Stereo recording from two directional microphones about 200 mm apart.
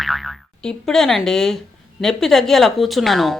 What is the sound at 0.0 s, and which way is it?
Speech, centre (ahead or behind).